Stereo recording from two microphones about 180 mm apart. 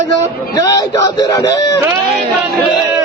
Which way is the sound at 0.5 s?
20° left (ahead or behind).